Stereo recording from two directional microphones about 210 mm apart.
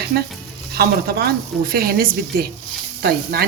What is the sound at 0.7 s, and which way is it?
A woman's voice, 50° right (ahead or behind).